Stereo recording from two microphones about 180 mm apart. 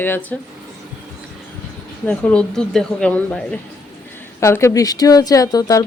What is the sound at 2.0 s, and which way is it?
Speech, 10° left (ahead or behind).